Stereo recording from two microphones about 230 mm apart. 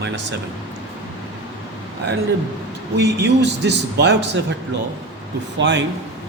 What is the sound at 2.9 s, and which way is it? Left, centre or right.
A man's voice, right.